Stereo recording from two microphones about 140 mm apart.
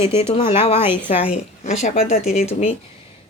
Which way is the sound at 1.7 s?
50° left (ahead or behind).